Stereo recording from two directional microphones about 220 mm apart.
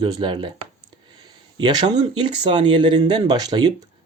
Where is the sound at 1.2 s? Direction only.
20° right (ahead or behind).